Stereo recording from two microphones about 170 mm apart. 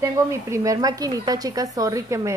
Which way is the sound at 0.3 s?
20° right (ahead or behind).